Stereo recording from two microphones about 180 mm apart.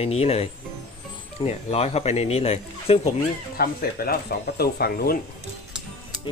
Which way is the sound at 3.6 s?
55° left (ahead or behind).